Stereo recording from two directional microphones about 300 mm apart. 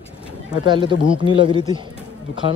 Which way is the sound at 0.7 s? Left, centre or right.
Centre.